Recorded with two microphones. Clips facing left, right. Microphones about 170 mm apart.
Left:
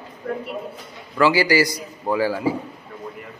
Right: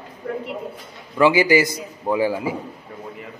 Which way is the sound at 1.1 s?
20° right (ahead or behind).